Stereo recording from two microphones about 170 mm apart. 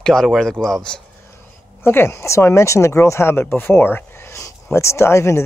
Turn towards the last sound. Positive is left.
turn(degrees=15)  # may be behind; listen again after turning